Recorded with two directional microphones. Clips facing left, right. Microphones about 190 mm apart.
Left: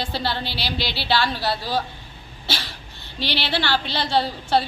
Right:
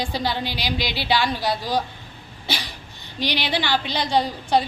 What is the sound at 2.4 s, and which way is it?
Cough, 15° right (ahead or behind).